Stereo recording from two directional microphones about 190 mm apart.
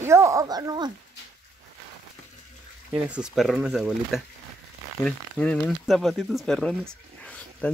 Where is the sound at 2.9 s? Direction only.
5° right (ahead or behind).